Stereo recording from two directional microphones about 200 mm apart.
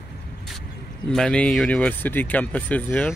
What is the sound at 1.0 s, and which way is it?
Speech, 5° left (ahead or behind).